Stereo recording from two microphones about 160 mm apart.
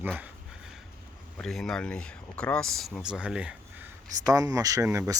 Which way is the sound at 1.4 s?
Centre (ahead or behind).